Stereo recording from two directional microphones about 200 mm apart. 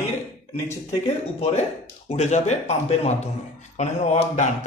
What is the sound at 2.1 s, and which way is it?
Speech, 35° left (ahead or behind).